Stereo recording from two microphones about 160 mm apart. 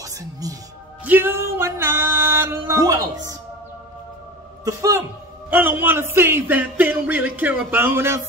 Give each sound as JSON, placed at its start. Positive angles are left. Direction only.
{"t": 0.0, "sound": "speech", "side_deg": -20}
{"t": 1.0, "sound": "music", "side_deg": -10}
{"t": 4.6, "sound": "a man's voice", "side_deg": -20}